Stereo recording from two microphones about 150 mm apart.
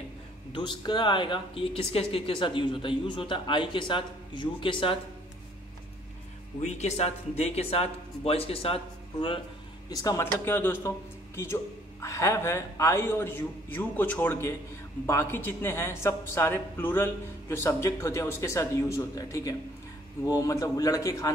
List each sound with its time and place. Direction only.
0.5 s speech: 30° left (ahead or behind)
6.6 s speech: 45° left (ahead or behind)
9.8 s speech: 20° left (ahead or behind)